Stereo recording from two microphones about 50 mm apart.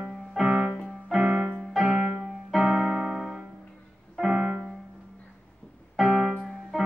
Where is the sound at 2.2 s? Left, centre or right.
Centre.